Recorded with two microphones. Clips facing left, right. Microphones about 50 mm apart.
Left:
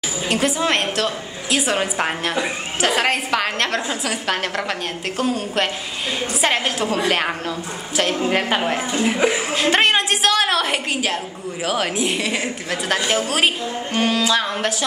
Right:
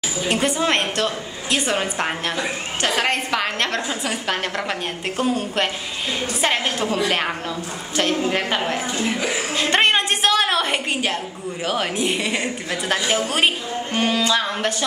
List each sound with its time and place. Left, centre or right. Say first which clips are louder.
0.3 s a woman's voice: left 1 dB; centre
8.2 s a woman's voice: left 2 dB; centre
9.5 s a sound: right 3 dB; centre
11.6 s a woman's voice: left 1 dB; centre